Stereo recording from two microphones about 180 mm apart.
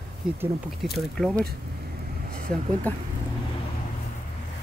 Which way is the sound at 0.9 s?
Centre (ahead or behind).